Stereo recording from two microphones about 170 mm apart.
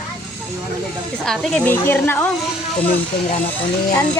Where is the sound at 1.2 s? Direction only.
5° left (ahead or behind).